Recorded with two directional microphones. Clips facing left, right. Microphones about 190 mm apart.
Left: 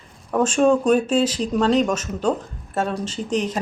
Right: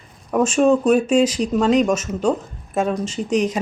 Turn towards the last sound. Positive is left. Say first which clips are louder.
# right 3 dB
turn(degrees=-10)  # may be behind; listen again after turning